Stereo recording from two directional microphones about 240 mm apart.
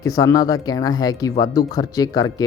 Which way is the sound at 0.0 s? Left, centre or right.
Centre.